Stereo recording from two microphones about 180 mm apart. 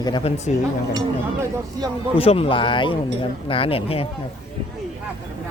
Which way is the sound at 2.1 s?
35° left (ahead or behind).